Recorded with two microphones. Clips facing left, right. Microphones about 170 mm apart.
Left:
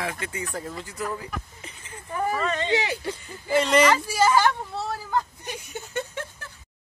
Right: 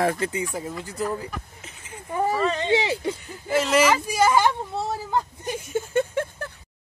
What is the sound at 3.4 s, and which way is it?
Speech, centre (ahead or behind).